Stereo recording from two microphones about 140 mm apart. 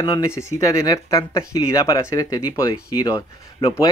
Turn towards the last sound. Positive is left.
turn(degrees=30)  # may be behind; listen again after turning